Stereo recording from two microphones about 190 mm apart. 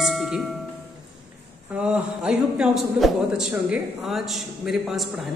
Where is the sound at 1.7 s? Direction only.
5° right (ahead or behind).